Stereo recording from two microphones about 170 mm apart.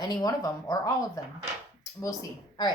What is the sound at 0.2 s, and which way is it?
Speech, 20° left (ahead or behind).